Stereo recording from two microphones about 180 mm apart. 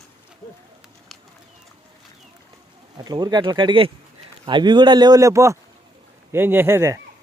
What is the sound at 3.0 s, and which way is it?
Speech, 20° right (ahead or behind).